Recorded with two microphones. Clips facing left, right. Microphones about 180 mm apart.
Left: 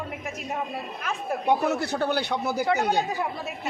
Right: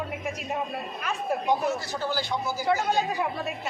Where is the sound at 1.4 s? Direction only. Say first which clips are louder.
Left 5 dB; 65° left (ahead or behind).